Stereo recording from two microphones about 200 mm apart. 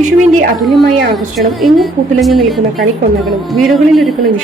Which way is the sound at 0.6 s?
Centre (ahead or behind).